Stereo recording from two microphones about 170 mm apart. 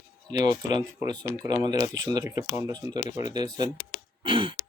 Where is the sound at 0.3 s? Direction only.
20° right (ahead or behind).